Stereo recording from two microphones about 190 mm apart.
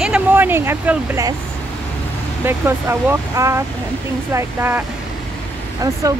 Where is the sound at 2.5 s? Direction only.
10° right (ahead or behind).